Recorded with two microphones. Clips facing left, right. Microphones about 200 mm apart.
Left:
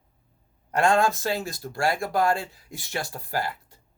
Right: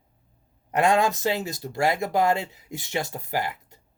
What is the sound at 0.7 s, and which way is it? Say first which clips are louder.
A man's voice: even; 20° right (ahead or behind).